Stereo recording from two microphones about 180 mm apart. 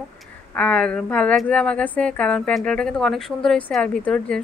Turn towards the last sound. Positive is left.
turn(degrees=5)  # may be behind; listen again after turning